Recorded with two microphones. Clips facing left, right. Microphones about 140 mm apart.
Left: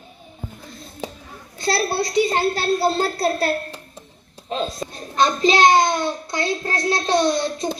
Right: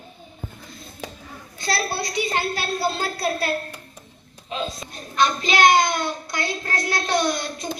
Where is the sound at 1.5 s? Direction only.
30° left (ahead or behind).